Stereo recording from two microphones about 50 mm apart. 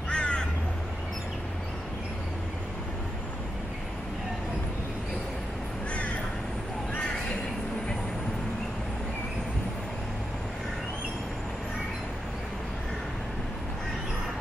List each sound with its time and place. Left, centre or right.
0.1 s crow: centre